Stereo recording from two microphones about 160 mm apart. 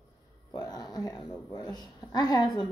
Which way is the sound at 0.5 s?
25° left (ahead or behind).